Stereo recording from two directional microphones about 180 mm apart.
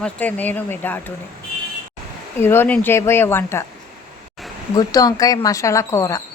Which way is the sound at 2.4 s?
15° left (ahead or behind).